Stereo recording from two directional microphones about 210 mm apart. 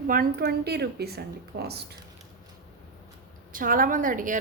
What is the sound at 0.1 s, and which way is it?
A woman's voice, 45° right (ahead or behind).